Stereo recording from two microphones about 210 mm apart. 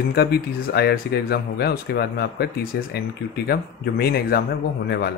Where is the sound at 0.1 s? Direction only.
50° left (ahead or behind).